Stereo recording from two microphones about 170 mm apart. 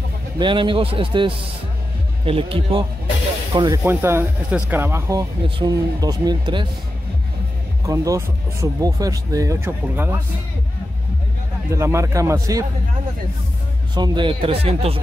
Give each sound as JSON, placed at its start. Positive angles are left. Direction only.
{"t": 0.4, "sound": "speech", "side_deg": -30}
{"t": 3.8, "sound": "speech", "side_deg": -15}
{"t": 7.8, "sound": "speech", "side_deg": -20}
{"t": 11.7, "sound": "speech", "side_deg": -15}
{"t": 13.9, "sound": "speech", "side_deg": -25}